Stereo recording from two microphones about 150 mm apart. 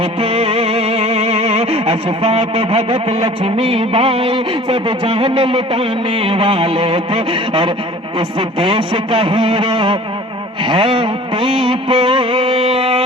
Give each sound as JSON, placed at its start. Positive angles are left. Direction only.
{"t": 0.0, "sound": "music", "side_deg": -40}